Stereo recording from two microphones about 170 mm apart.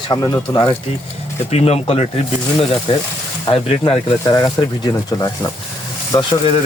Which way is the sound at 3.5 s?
35° left (ahead or behind).